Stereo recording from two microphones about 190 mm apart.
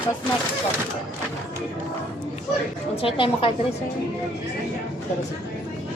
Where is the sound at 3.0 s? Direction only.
25° left (ahead or behind).